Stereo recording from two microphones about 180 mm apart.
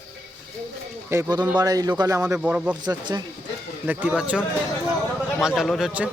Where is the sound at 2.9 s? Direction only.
20° right (ahead or behind).